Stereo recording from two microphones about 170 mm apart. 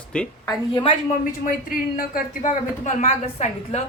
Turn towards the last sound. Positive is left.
turn(degrees=40)  # may be behind; listen again after turning